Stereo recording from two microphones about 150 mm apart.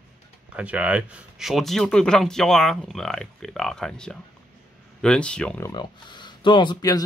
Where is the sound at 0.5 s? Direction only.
10° right (ahead or behind); by 5.6 s 5° left (ahead or behind).